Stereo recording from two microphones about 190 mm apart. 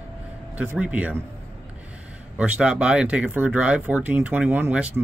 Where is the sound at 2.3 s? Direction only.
5° right (ahead or behind).